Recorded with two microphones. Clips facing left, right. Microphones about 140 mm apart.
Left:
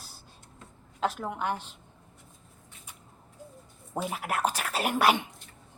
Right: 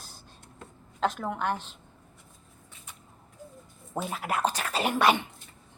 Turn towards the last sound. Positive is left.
turn(degrees=10)  # may be behind; listen again after turning